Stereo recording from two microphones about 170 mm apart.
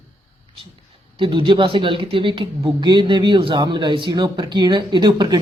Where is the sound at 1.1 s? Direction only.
30° right (ahead or behind).